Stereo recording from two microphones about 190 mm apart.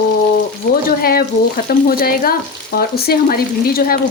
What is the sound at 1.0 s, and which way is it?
Speech, 50° left (ahead or behind).